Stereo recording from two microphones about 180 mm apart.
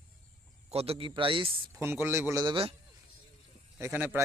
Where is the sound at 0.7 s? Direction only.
35° right (ahead or behind).